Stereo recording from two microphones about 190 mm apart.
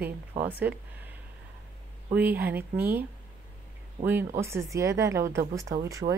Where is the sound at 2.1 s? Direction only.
10° right (ahead or behind).